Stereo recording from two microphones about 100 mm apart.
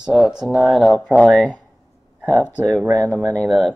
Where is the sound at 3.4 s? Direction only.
Centre (ahead or behind).